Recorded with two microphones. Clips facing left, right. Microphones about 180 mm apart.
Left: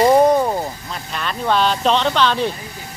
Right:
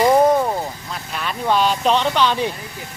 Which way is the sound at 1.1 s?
10° right (ahead or behind).